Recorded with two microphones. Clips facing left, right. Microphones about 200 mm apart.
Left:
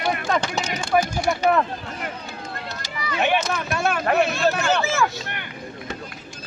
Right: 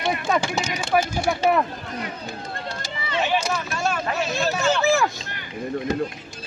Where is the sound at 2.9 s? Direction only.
25° right (ahead or behind).